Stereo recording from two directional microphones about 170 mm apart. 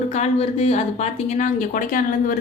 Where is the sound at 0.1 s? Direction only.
40° left (ahead or behind).